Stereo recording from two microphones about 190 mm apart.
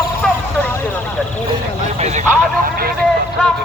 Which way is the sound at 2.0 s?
40° right (ahead or behind).